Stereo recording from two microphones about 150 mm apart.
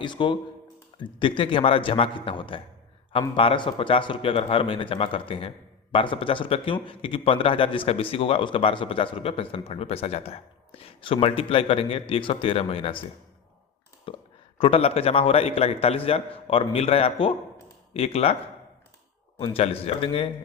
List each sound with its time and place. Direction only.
0.0 s a man's voice: 35° left (ahead or behind)
14.1 s a sound: 35° left (ahead or behind)
14.6 s a man's voice: 40° left (ahead or behind)
19.4 s a man's voice: 40° left (ahead or behind)